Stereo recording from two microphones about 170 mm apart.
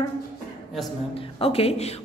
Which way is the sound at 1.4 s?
35° left (ahead or behind).